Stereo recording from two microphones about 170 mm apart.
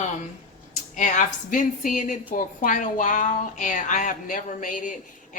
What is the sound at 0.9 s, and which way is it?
A woman's voice, 45° left (ahead or behind).